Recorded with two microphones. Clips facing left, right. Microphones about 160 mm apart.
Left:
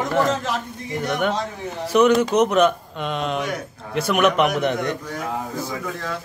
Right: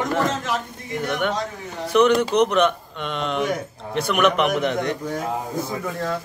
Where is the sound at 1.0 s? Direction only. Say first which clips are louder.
Left 1 dB; 5° left (ahead or behind).